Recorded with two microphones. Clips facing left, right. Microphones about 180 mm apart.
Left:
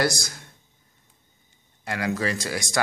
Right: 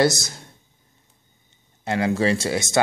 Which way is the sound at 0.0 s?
25° right (ahead or behind).